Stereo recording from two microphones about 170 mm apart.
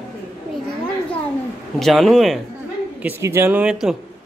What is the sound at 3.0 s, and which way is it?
Speech, 15° right (ahead or behind).